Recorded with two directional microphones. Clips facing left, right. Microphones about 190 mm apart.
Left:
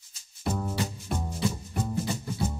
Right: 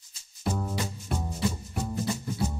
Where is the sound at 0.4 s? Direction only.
Centre (ahead or behind).